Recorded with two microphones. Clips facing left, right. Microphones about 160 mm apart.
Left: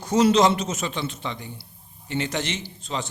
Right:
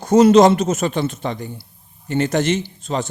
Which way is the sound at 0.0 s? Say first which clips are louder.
Right 8 dB; 50° right (ahead or behind).